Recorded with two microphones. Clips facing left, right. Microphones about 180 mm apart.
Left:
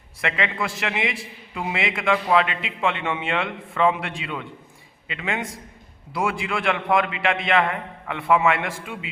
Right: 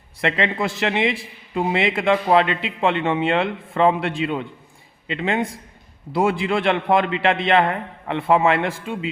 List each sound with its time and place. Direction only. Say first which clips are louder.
0.2 s a man's voice: right 4 dB; 30° right (ahead or behind)